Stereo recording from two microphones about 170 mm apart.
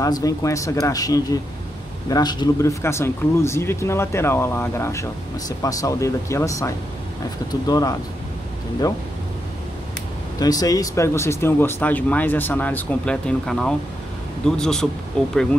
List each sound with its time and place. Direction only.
0.0 s speech: 20° left (ahead or behind)
10.4 s speech: 20° left (ahead or behind); by 15.3 s 5° left (ahead or behind)